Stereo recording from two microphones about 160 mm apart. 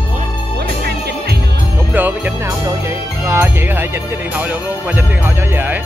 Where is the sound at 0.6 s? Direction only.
90° right.